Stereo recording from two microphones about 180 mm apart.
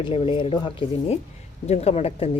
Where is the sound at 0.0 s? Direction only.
30° left (ahead or behind).